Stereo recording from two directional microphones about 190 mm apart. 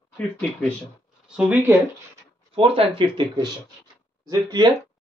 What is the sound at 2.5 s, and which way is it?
Speech, 30° right (ahead or behind).